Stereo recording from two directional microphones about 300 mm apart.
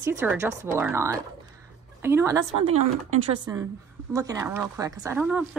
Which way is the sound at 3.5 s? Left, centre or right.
Centre.